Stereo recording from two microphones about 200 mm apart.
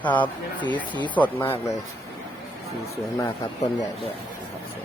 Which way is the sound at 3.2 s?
15° left (ahead or behind).